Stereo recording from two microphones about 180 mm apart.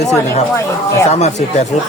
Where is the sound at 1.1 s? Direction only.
40° left (ahead or behind).